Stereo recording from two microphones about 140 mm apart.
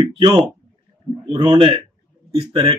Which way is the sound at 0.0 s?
45° right (ahead or behind).